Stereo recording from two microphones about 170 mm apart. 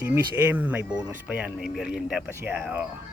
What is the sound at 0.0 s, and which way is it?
Speech, 10° right (ahead or behind).